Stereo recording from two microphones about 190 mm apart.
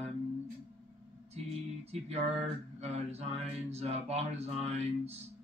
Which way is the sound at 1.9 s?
35° right (ahead or behind).